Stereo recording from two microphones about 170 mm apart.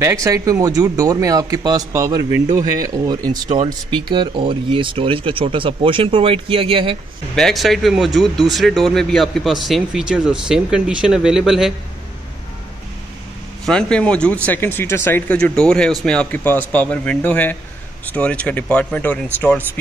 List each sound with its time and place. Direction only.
0.0 s speech: 20° right (ahead or behind)
7.3 s speech: centre (ahead or behind)
13.7 s speech: 5° left (ahead or behind)